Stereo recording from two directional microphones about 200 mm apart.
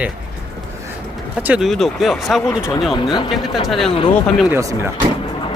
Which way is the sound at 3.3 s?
Centre (ahead or behind).